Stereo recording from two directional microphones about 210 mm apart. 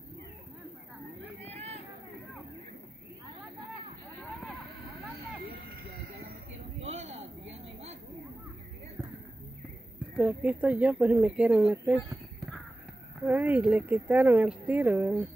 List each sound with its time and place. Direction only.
6.8 s a sound: 30° right (ahead or behind)
10.1 s speech: 5° right (ahead or behind)
13.2 s speech: 10° right (ahead or behind)